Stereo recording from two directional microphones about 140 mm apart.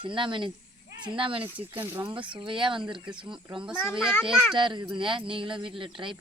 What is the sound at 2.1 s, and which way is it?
Speech, 35° right (ahead or behind).